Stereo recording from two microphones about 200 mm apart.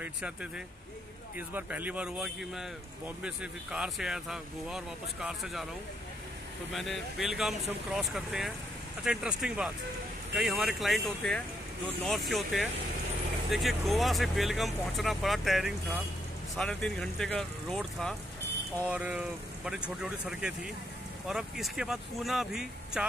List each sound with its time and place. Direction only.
0.0 s speech: 5° right (ahead or behind)
1.5 s a man's voice: 10° right (ahead or behind)
6.7 s speech: centre (ahead or behind)